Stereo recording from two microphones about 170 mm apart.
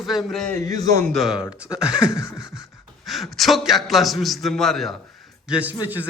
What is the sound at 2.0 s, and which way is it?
Speech, 20° left (ahead or behind).